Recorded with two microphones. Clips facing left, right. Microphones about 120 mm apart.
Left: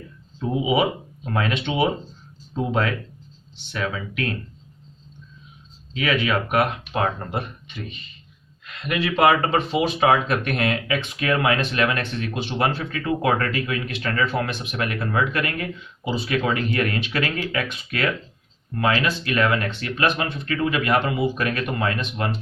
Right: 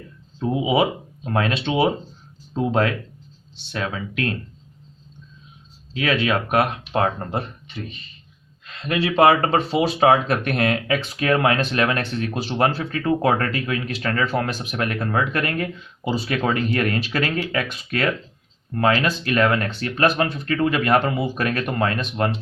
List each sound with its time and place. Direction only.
0.7 s speech: 35° right (ahead or behind)
6.1 s speech: 40° right (ahead or behind)